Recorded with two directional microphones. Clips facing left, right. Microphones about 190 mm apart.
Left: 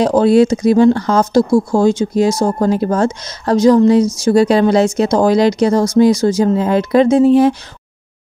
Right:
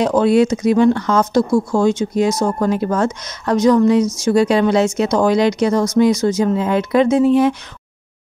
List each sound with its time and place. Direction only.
0.0 s speech: 35° left (ahead or behind)